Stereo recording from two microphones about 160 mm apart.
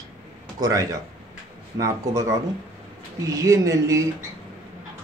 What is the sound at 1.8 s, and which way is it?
Speech, 20° right (ahead or behind).